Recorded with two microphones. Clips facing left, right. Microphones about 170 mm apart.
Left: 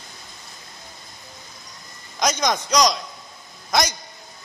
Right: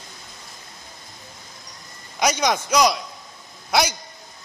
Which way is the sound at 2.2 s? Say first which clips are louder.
Right 1 dB; 10° right (ahead or behind).